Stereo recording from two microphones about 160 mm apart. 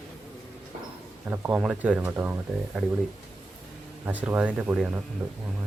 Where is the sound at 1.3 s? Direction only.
10° right (ahead or behind).